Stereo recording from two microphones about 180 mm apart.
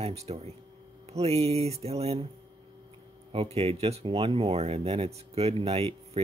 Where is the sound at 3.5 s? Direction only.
35° right (ahead or behind).